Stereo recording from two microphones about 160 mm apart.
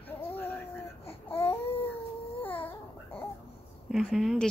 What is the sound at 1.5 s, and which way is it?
Baby cry, 35° left (ahead or behind).